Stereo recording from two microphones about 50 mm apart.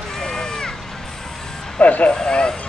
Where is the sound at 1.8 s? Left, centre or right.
Left.